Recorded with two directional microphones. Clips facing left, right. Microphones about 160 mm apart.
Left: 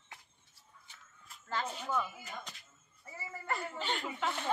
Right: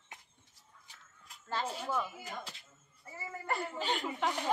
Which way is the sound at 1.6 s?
10° right (ahead or behind).